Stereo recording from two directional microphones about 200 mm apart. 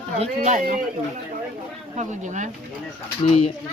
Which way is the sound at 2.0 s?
35° right (ahead or behind).